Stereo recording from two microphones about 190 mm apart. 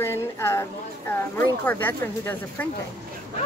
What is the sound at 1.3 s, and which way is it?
Speech, 10° left (ahead or behind).